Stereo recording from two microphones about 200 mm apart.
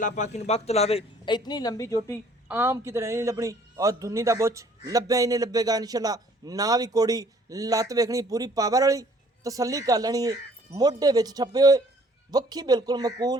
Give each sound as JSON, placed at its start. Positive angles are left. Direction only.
{"t": 0.0, "sound": "a man's voice", "side_deg": 35}
{"t": 2.5, "sound": "a man's voice", "side_deg": -10}